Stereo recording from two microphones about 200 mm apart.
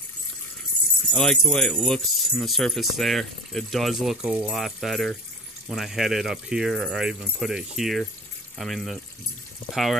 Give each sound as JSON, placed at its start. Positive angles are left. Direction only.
{"t": 1.1, "sound": "speech", "side_deg": 0}